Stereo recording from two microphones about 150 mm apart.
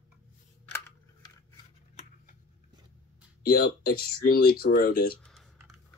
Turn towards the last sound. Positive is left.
turn(degrees=5)  # may be behind; listen again after turning